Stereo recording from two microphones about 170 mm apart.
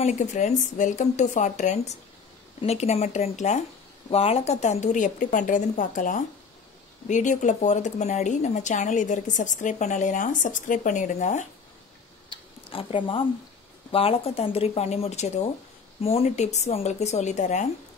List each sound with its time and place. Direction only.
0.0 s a woman's voice: 45° left (ahead or behind)
12.6 s a woman's voice: 30° left (ahead or behind)